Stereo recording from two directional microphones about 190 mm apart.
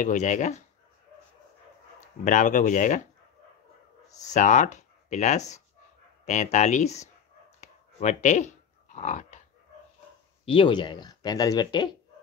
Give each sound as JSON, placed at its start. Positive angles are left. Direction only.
{"t": 0.0, "sound": "speech", "side_deg": 40}
{"t": 2.2, "sound": "speech", "side_deg": 40}
{"t": 4.2, "sound": "speech", "side_deg": 40}
{"t": 7.6, "sound": "dog", "side_deg": 40}
{"t": 10.4, "sound": "speech", "side_deg": 25}